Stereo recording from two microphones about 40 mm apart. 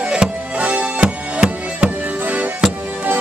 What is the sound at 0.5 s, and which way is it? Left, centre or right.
Music, right.